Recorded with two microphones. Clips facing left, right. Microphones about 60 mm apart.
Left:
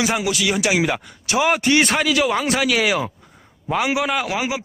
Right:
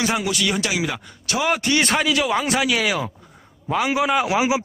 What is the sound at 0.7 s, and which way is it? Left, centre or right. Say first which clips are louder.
Speech: left 5 dB; left.